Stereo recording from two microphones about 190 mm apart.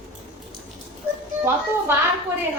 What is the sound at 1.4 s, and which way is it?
Speech, 10° right (ahead or behind).